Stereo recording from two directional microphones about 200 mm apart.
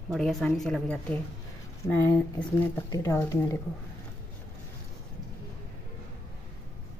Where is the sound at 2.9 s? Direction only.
15° left (ahead or behind).